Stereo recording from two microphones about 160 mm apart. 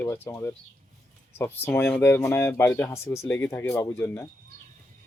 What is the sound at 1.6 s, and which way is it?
Speech, 15° left (ahead or behind).